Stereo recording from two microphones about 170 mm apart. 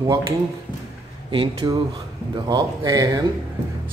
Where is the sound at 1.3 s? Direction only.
25° right (ahead or behind).